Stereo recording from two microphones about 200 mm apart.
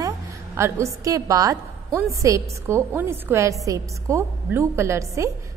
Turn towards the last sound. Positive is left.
turn(degrees=-15)  # may be behind; listen again after turning